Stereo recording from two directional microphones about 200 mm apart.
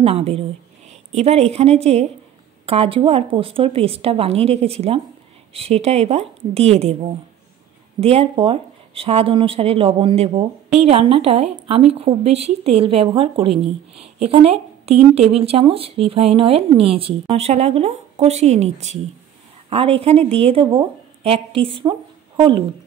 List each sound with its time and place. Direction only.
0.0 s a woman's voice: 30° right (ahead or behind)